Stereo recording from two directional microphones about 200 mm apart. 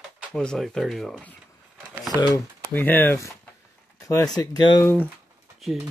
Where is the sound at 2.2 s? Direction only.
10° left (ahead or behind).